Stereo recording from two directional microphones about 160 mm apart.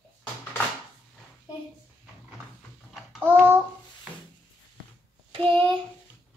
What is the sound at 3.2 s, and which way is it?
Child singing, 15° right (ahead or behind).